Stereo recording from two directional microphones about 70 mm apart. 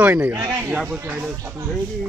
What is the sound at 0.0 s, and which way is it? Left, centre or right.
Speech, right.